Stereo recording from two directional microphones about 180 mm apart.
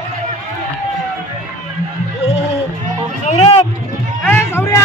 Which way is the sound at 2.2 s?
35° left (ahead or behind).